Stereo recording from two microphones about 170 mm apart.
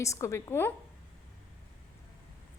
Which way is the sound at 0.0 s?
15° left (ahead or behind).